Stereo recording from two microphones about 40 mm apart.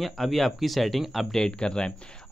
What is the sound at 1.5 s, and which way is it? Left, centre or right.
Speech, left.